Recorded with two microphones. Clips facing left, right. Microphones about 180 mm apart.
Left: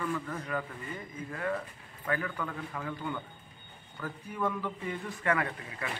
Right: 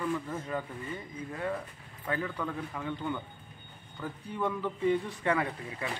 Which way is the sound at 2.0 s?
25° right (ahead or behind).